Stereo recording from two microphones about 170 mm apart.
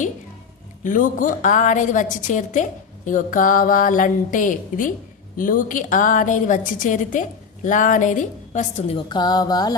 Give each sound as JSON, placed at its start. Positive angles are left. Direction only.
{"t": 0.9, "sound": "a woman's voice", "side_deg": 50}
{"t": 9.0, "sound": "music", "side_deg": 25}